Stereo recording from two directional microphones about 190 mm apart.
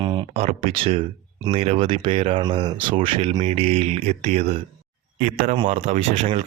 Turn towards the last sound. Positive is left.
turn(degrees=-35)  # may be behind; listen again after turning